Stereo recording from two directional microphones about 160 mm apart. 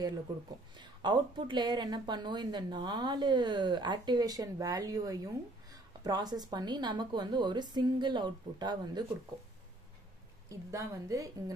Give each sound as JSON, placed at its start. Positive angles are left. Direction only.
{"t": 0.7, "sound": "a woman's voice", "side_deg": -30}
{"t": 10.5, "sound": "a woman's voice", "side_deg": -20}